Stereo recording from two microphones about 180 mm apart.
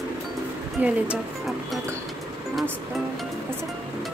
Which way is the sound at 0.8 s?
5° right (ahead or behind).